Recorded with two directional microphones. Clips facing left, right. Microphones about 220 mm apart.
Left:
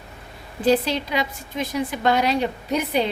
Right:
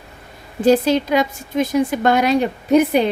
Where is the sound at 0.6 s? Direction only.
45° right (ahead or behind).